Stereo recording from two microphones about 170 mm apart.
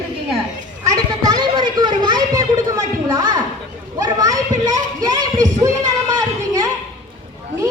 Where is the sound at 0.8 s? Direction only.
20° right (ahead or behind).